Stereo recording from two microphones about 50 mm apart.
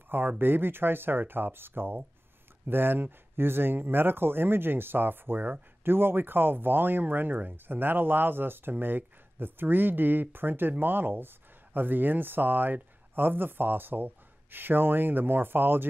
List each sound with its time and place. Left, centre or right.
0.1 s speech: right